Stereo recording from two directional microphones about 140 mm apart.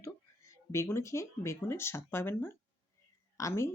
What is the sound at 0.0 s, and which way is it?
Speech, 20° left (ahead or behind).